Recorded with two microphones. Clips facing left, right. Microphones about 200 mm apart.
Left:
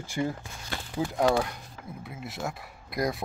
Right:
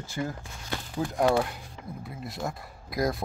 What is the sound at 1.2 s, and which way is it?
Speech, centre (ahead or behind).